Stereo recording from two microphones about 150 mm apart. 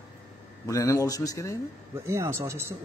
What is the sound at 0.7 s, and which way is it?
Speech, 20° left (ahead or behind).